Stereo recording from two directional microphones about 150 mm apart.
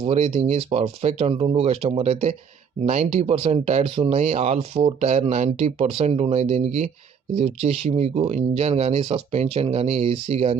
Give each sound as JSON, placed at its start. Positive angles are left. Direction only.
{"t": 0.0, "sound": "speech", "side_deg": -45}